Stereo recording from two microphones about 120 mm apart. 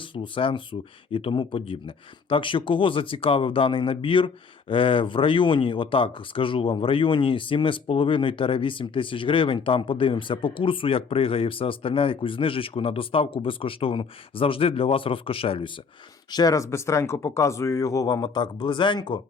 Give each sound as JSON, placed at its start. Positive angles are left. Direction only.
{"t": 0.0, "sound": "speech", "side_deg": 45}
{"t": 16.3, "sound": "speech", "side_deg": 30}